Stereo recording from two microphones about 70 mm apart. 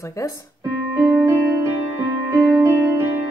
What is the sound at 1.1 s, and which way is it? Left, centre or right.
Music, right.